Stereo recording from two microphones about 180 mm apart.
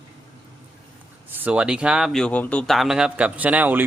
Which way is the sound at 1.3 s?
10° right (ahead or behind).